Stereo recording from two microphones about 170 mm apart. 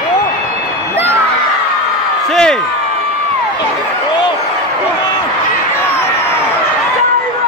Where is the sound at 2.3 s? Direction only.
5° left (ahead or behind).